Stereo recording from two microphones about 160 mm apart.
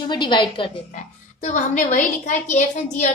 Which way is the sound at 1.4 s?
55° left (ahead or behind).